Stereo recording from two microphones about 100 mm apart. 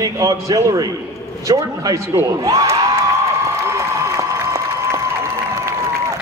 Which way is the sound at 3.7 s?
30° right (ahead or behind).